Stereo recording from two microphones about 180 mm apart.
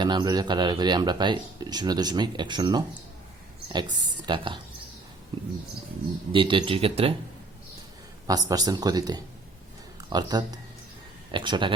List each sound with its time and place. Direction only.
0.0 s speech: 25° right (ahead or behind)
6.3 s speech: 25° right (ahead or behind)
8.3 s speech: 20° right (ahead or behind)